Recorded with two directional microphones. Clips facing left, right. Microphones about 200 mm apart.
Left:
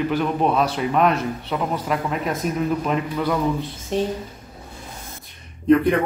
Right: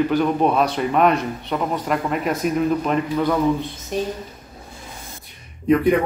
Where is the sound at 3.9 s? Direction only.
25° left (ahead or behind).